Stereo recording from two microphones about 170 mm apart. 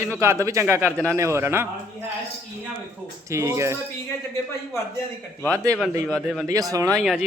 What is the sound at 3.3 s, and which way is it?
Speech, 15° right (ahead or behind).